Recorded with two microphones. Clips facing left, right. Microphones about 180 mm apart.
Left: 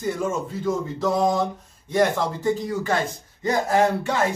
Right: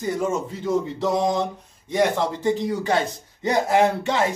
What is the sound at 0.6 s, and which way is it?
Speech, 20° right (ahead or behind).